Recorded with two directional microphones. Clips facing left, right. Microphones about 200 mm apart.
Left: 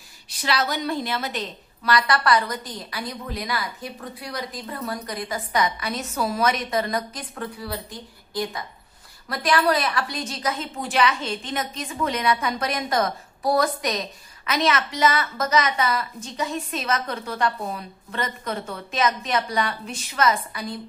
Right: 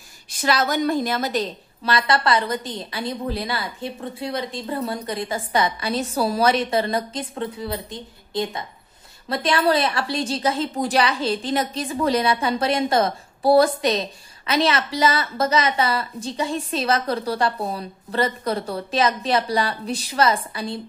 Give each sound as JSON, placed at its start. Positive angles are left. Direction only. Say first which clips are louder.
{"t": 0.3, "sound": "a woman's voice", "louder": "right 4 dB", "side_deg": -45}